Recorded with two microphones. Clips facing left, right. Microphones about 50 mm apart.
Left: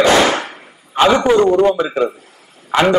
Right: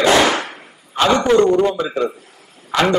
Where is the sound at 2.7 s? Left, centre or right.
Left.